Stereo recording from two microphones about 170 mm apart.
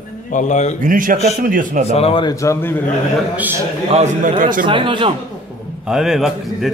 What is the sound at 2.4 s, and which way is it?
Speech, 15° left (ahead or behind).